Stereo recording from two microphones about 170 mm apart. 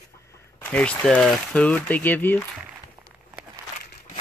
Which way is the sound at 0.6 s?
5° left (ahead or behind).